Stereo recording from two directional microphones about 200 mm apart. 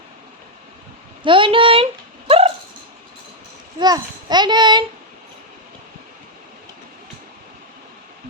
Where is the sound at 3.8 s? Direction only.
20° right (ahead or behind).